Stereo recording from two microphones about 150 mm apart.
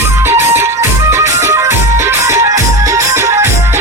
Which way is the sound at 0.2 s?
15° right (ahead or behind).